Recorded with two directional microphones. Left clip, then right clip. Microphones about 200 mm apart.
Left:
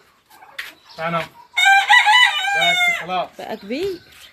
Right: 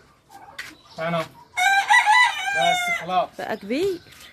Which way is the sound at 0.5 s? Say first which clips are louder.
Left 4 dB; 15° right (ahead or behind).